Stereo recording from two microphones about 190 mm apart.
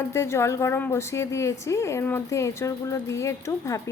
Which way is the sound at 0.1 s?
15° left (ahead or behind).